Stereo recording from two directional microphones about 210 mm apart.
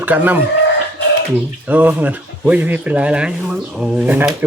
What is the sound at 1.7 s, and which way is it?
Speech, 10° right (ahead or behind).